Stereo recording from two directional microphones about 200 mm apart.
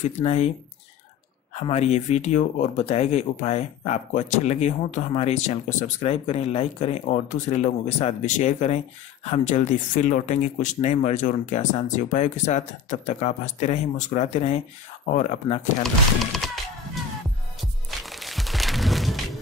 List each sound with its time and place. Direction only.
0.2 s speech: 30° left (ahead or behind)
1.5 s speech: 30° left (ahead or behind)
15.8 s speech: centre (ahead or behind)
17.6 s music: centre (ahead or behind)